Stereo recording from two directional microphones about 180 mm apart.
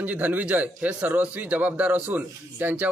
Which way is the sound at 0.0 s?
10° right (ahead or behind).